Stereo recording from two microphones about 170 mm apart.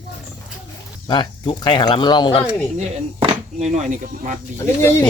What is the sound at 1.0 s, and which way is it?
Speech, 30° left (ahead or behind).